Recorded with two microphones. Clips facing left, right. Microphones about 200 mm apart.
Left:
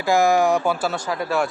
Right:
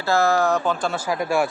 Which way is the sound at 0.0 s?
15° left (ahead or behind).